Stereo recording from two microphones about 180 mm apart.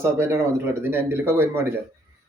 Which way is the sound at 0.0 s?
15° right (ahead or behind).